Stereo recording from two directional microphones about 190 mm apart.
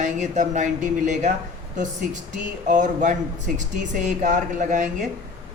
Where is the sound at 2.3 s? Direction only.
40° right (ahead or behind).